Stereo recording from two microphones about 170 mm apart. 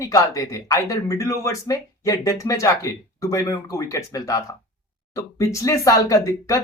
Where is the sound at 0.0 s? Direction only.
20° left (ahead or behind).